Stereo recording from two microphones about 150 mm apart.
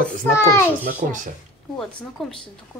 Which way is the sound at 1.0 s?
60° right (ahead or behind).